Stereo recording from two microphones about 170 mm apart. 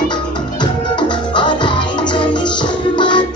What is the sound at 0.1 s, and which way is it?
Music, 25° left (ahead or behind).